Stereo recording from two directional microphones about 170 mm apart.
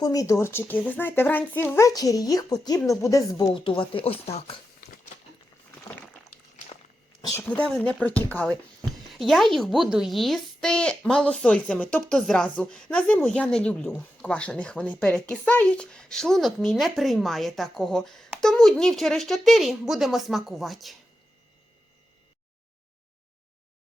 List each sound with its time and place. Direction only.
0.0 s speech: 20° left (ahead or behind); by 4.6 s 35° left (ahead or behind)
7.4 s a woman's voice: 5° left (ahead or behind)